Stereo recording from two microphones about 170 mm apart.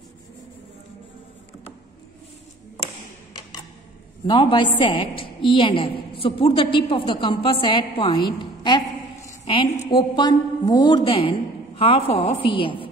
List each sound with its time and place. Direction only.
4.3 s a woman's voice: 30° left (ahead or behind)